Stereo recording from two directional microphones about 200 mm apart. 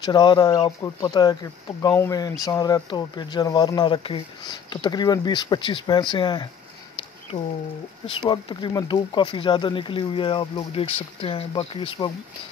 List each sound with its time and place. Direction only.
0.0 s speech: 20° left (ahead or behind)
8.2 s speech: 25° left (ahead or behind)